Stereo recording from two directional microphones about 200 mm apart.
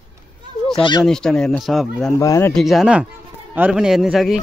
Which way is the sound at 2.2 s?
15° left (ahead or behind).